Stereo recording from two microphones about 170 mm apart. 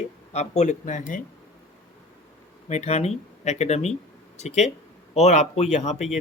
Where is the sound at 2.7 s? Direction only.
40° left (ahead or behind).